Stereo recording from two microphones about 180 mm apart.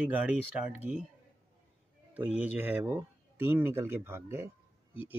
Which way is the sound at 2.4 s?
10° right (ahead or behind).